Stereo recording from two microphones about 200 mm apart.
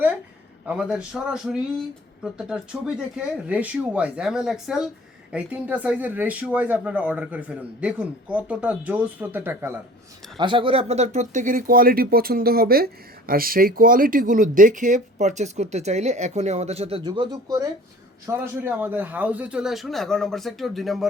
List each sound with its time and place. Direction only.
0.6 s speech: 5° right (ahead or behind)
10.3 s speech: 25° right (ahead or behind); by 21.1 s centre (ahead or behind)